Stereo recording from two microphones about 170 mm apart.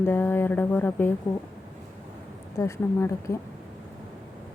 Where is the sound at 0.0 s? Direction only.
15° left (ahead or behind).